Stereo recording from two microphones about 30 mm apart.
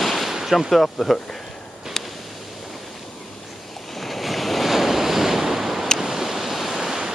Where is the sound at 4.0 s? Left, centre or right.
Centre.